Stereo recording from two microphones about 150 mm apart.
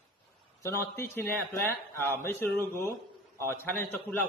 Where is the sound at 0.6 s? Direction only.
15° left (ahead or behind).